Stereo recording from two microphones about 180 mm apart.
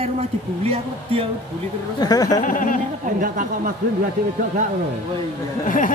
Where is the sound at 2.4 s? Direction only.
45° left (ahead or behind).